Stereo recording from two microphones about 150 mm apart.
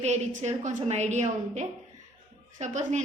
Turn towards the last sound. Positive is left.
turn(degrees=-55)  # may be behind; listen again after turning